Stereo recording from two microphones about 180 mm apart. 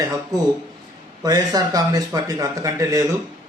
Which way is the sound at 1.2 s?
20° right (ahead or behind).